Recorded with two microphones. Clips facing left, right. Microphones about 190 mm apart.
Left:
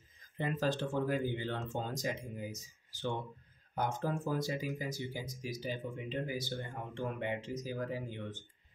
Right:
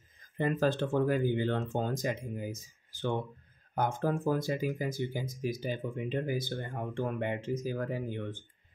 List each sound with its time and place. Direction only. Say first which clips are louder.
0.4 s speech: right 5 dB; 50° right (ahead or behind)